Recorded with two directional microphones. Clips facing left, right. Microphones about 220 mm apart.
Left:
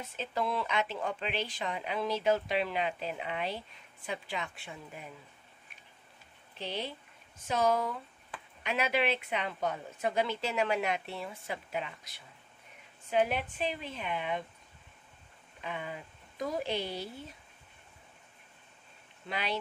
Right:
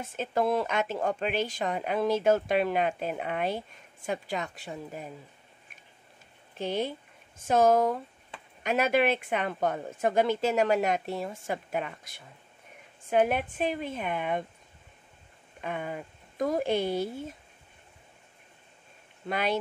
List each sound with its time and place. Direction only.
0.0 s speech: 50° right (ahead or behind)
6.6 s speech: 50° right (ahead or behind)
8.3 s a sound: 25° right (ahead or behind)
8.6 s speech: 45° right (ahead or behind)
15.6 s speech: 50° right (ahead or behind)
19.2 s speech: 50° right (ahead or behind)